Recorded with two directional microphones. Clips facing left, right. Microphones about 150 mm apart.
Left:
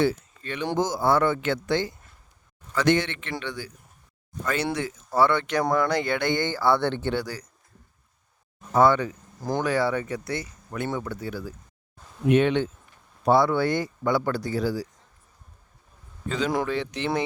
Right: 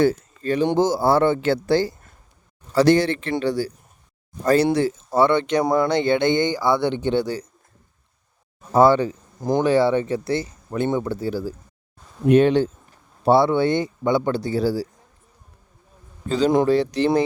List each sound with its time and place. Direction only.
0.0 s speech: 40° right (ahead or behind); by 7.4 s 25° right (ahead or behind)
8.7 s speech: 30° right (ahead or behind)
9.4 s speech: 20° right (ahead or behind)
16.6 s speech: 35° right (ahead or behind)